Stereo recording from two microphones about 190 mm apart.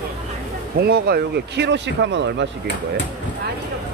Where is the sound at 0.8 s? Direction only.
55° right (ahead or behind).